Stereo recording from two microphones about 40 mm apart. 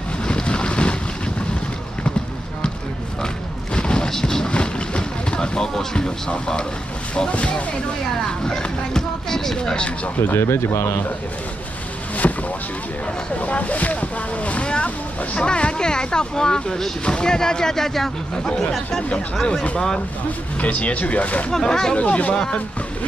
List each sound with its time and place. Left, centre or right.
0.2 s boat: left
3.7 s a sound: left
4.1 s a sound: centre
4.5 s vehicle: left
7.2 s speech: left
8.5 s speech: centre
9.6 s speech: left
10.2 s speech: left
12.2 s boat: left
13.4 s speech: left; by 18.5 s centre
20.6 s speech: left
21.6 s speech: centre
21.9 s speech: left